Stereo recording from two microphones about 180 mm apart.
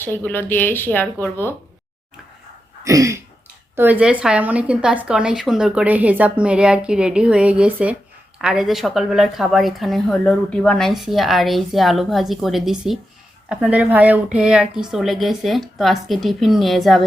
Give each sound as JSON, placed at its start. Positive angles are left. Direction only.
{"t": 0.0, "sound": "speech", "side_deg": 10}
{"t": 2.8, "sound": "a sound", "side_deg": -20}
{"t": 3.8, "sound": "a woman's voice", "side_deg": -10}